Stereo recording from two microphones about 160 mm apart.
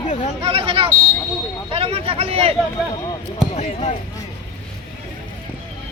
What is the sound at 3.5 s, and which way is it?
Speech, 40° left (ahead or behind).